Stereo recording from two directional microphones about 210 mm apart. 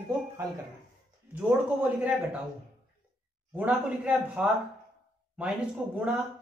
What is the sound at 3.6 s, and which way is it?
A man's voice, 5° right (ahead or behind).